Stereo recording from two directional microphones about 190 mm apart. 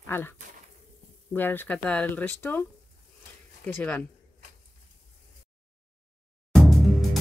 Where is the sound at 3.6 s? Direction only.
10° left (ahead or behind).